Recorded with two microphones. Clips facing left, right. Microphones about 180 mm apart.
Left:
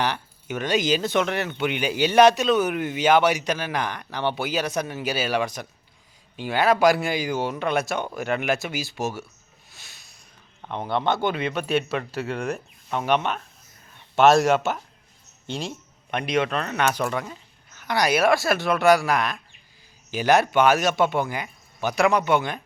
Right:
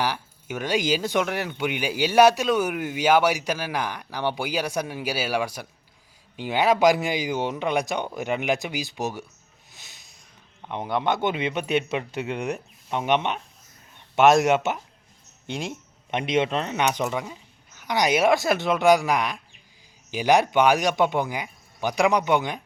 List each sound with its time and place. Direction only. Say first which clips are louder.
0.0 s speech: left 1 dB; 10° right (ahead or behind)
9.7 s a sound: even; 20° right (ahead or behind)
10.6 s speech: left 1 dB; 15° right (ahead or behind)
16.1 s speech: right 1 dB; 25° right (ahead or behind)